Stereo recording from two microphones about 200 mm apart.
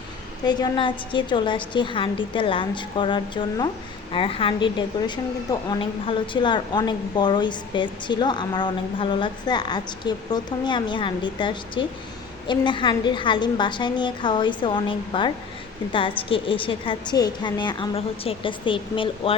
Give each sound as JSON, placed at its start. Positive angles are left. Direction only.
{"t": 0.4, "sound": "a woman's voice", "side_deg": 20}